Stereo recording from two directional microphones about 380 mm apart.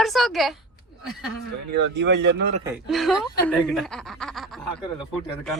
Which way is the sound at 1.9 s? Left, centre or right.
Right.